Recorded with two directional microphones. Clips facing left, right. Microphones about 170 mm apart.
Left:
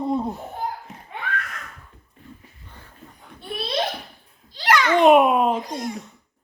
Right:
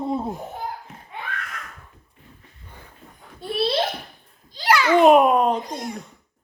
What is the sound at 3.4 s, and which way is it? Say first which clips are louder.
Speech: right 4 dB; 30° right (ahead or behind).